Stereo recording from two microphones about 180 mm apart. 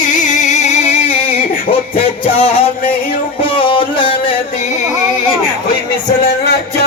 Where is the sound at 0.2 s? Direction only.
45° left (ahead or behind).